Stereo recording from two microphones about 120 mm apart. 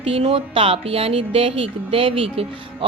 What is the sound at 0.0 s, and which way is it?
Speech, 55° right (ahead or behind).